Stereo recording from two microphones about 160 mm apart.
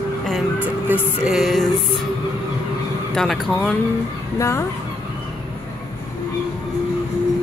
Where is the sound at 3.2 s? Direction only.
Centre (ahead or behind).